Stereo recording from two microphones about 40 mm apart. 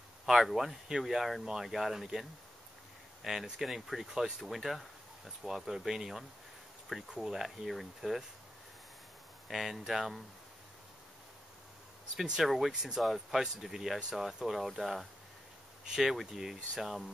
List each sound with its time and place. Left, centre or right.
0.2 s speech: centre
1.4 s speech: centre
9.5 s speech: centre
12.4 s speech: centre